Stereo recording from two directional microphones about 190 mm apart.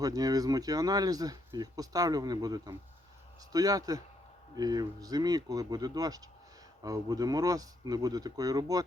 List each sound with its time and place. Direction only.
0.0 s speech: 20° right (ahead or behind)